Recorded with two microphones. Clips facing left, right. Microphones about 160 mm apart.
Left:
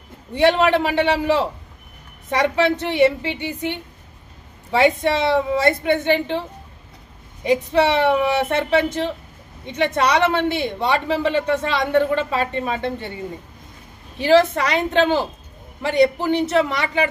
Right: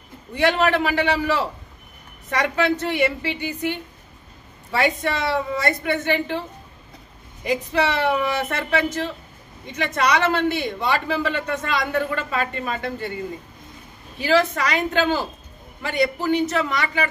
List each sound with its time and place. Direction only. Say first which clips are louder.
0.3 s speech: left 3 dB; 25° left (ahead or behind)
7.4 s speech: left 5 dB; 25° left (ahead or behind)
14.2 s speech: left 4 dB; 25° left (ahead or behind)